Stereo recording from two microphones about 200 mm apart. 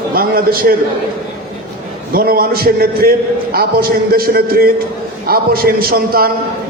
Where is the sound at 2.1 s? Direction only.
50° right (ahead or behind).